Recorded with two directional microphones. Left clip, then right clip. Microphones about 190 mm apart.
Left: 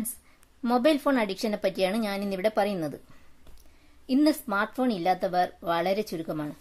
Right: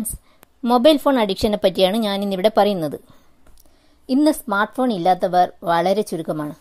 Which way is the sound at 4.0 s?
30° right (ahead or behind).